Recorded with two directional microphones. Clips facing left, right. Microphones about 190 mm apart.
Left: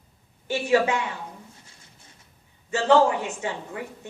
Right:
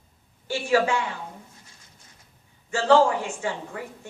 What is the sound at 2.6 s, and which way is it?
A woman's voice, 20° left (ahead or behind).